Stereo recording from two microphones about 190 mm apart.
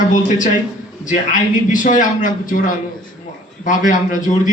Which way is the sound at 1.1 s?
40° left (ahead or behind).